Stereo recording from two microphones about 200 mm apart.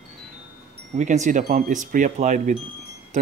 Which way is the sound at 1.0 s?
35° right (ahead or behind).